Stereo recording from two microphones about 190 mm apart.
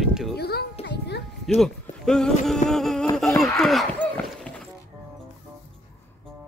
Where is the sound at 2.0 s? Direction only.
5° left (ahead or behind).